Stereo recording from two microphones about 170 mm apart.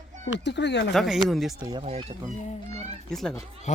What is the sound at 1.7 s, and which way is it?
Speech, 30° right (ahead or behind).